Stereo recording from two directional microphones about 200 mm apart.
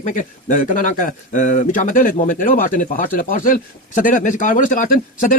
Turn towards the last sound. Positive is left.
turn(degrees=45)  # may be behind; listen again after turning